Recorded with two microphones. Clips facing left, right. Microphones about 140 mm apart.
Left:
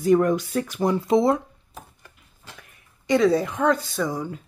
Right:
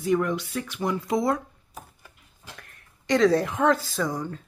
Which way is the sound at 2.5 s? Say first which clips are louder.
Even; 5° left (ahead or behind).